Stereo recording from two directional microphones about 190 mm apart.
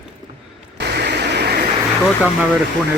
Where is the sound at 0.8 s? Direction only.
60° right (ahead or behind).